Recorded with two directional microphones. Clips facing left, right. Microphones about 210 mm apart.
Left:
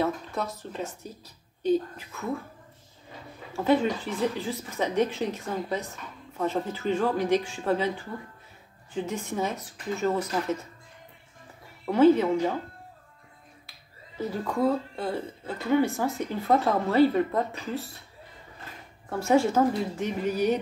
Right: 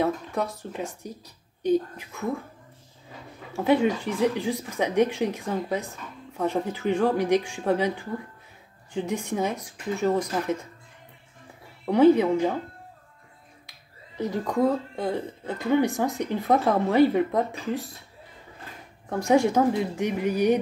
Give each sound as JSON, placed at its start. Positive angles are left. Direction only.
{"t": 0.0, "sound": "speech", "side_deg": -15}
{"t": 3.5, "sound": "speech", "side_deg": -15}
{"t": 8.9, "sound": "speech", "side_deg": -15}
{"t": 11.8, "sound": "speech", "side_deg": -15}
{"t": 14.1, "sound": "speech", "side_deg": -15}
{"t": 19.0, "sound": "speech", "side_deg": -15}